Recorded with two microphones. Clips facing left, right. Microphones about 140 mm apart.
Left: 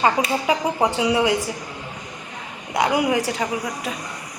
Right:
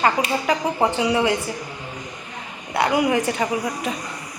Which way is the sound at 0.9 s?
10° left (ahead or behind).